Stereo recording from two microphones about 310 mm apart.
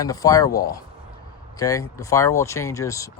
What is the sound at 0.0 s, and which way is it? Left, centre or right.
Speech, centre.